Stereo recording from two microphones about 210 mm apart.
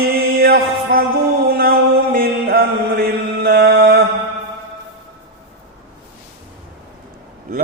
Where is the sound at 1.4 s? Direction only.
45° right (ahead or behind).